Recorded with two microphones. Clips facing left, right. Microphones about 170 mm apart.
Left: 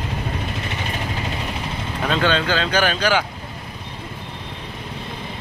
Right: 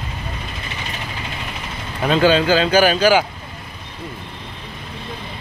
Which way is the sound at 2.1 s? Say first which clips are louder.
Right 6 dB; 5° right (ahead or behind).